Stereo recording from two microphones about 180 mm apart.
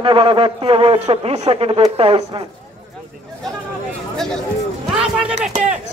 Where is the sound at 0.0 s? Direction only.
30° right (ahead or behind).